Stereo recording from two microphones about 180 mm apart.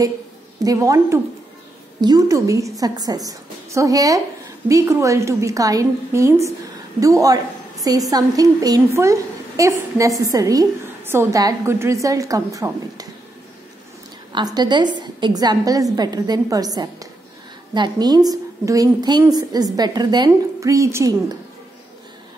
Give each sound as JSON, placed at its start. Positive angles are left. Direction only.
{"t": 0.7, "sound": "a woman's voice", "side_deg": -20}
{"t": 14.3, "sound": "a woman's voice", "side_deg": -25}